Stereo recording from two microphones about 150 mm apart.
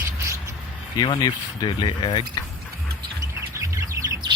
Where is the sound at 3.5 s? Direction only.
20° right (ahead or behind).